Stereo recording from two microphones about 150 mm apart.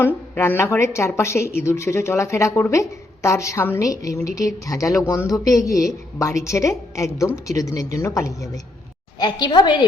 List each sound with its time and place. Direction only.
0.0 s a woman's voice: 15° left (ahead or behind); by 9.8 s 30° left (ahead or behind)